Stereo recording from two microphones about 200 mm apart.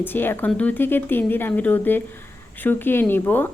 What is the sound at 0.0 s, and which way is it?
A woman's voice, 10° left (ahead or behind).